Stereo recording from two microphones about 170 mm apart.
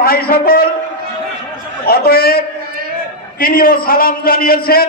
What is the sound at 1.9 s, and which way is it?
A man's voice, 65° left (ahead or behind).